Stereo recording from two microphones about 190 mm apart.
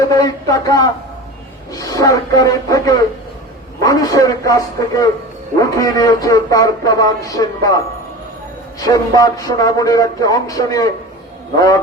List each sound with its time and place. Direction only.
0.0 s speech: 20° left (ahead or behind)
1.7 s speech: 15° left (ahead or behind)
8.8 s speech: 20° left (ahead or behind)